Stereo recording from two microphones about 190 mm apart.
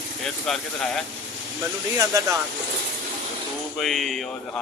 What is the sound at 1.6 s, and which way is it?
Speech, 15° right (ahead or behind).